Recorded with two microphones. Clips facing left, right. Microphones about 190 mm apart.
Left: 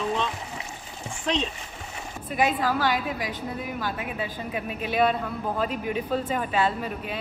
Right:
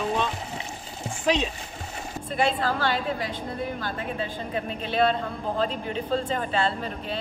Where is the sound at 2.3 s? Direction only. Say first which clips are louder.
Left 1 dB; 10° left (ahead or behind).